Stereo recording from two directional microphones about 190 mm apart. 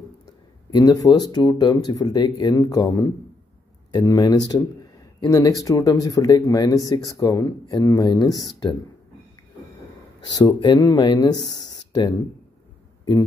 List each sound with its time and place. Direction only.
0.7 s speech: 20° left (ahead or behind)
10.2 s speech: 25° left (ahead or behind)